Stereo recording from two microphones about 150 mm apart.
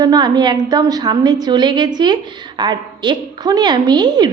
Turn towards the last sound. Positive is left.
turn(degrees=-30)  # may be behind; listen again after turning